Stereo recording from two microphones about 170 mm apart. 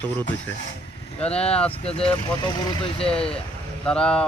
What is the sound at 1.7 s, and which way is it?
Speech, 35° left (ahead or behind).